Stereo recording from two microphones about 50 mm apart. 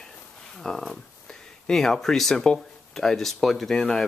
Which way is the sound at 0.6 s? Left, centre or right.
Centre.